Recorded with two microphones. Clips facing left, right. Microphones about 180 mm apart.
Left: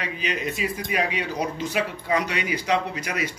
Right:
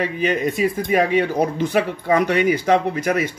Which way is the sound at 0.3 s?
50° right (ahead or behind).